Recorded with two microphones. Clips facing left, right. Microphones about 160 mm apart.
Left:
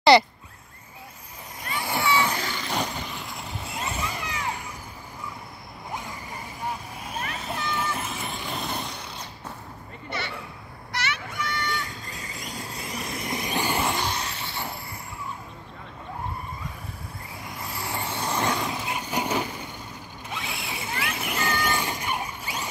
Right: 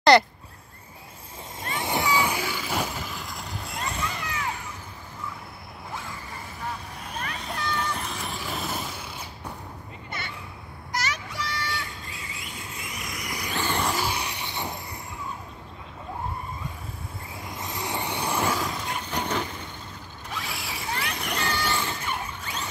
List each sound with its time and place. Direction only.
0.1 s speech: centre (ahead or behind)
1.6 s vehicle: 25° right (ahead or behind); by 4.4 s 10° left (ahead or behind)
7.6 s vehicle: 5° left (ahead or behind)
10.9 s a sound: 40° right (ahead or behind)
11.7 s vehicle: 40° left (ahead or behind); by 13.8 s 15° left (ahead or behind)
13.8 s vehicle: 5° right (ahead or behind)
17.6 s vehicle: 20° right (ahead or behind)
18.7 s vehicle: 5° left (ahead or behind)